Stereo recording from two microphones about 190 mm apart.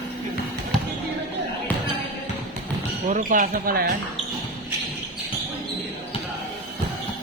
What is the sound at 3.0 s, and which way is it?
Speech, 45° right (ahead or behind).